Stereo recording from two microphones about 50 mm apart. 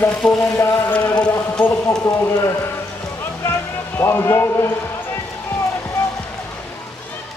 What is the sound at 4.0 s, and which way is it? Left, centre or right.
Speech, left.